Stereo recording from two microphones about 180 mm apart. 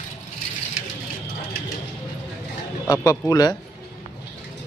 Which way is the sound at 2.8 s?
20° left (ahead or behind).